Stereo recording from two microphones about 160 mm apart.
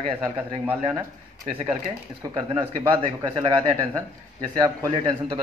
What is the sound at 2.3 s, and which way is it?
Speech, 20° right (ahead or behind).